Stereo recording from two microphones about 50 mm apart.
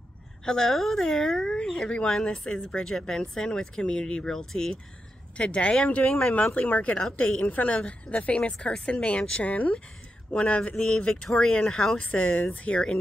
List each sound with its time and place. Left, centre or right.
0.5 s speech: centre
12.1 s speech: left